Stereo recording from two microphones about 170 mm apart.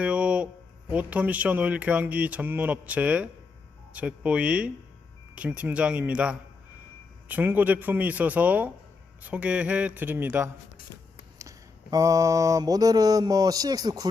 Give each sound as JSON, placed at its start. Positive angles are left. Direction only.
{"t": 0.0, "sound": "a sound", "side_deg": -5}
{"t": 0.9, "sound": "speech", "side_deg": -10}
{"t": 11.3, "sound": "mantra", "side_deg": -20}